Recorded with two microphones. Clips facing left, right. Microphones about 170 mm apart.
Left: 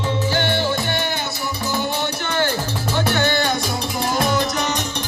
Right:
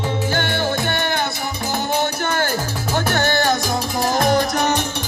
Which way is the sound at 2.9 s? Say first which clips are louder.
Even; 45° right (ahead or behind).